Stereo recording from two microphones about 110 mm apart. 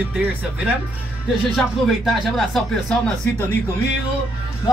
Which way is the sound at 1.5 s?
Centre (ahead or behind).